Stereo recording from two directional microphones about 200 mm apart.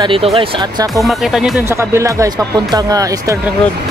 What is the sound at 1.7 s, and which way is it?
Speech, 15° right (ahead or behind).